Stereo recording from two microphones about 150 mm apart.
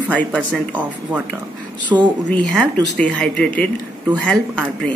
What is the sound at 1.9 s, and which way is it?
Speech, 15° right (ahead or behind).